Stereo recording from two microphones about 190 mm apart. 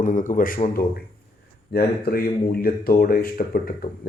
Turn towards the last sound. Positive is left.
turn(degrees=50)  # may be behind; listen again after turning